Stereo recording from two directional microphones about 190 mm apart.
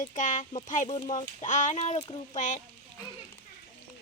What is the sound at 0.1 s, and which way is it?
Speech, 40° left (ahead or behind).